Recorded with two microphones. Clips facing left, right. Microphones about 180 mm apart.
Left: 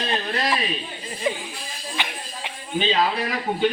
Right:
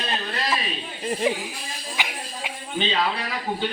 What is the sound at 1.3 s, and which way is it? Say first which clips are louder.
Speech: left 2 dB; 10° right (ahead or behind).